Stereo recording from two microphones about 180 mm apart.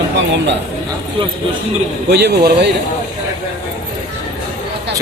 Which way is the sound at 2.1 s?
65° right (ahead or behind).